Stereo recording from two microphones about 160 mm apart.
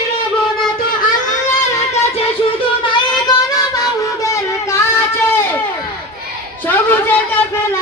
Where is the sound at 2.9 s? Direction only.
30° left (ahead or behind).